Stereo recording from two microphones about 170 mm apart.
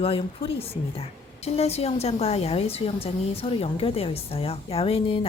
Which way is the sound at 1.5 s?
35° left (ahead or behind).